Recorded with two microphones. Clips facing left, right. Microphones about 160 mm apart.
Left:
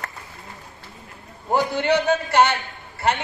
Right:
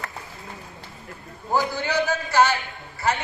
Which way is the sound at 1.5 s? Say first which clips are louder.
Left 4 dB; 65° left (ahead or behind).